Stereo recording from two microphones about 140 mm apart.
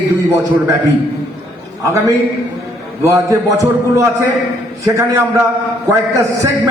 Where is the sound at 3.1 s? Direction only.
20° right (ahead or behind).